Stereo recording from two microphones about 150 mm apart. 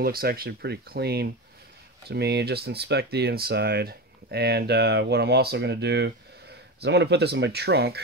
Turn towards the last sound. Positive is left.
turn(degrees=-90)